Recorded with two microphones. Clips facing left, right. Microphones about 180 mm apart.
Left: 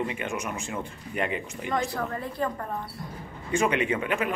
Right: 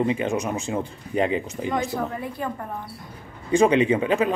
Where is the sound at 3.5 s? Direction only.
30° right (ahead or behind).